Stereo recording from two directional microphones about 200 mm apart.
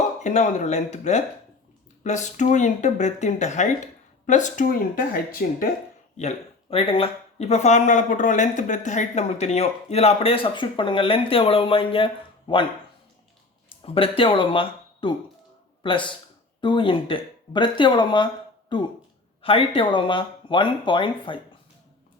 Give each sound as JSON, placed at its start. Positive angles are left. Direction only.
{"t": 0.2, "sound": "speech", "side_deg": 35}
{"t": 6.1, "sound": "speech", "side_deg": 30}
{"t": 13.7, "sound": "speech", "side_deg": 25}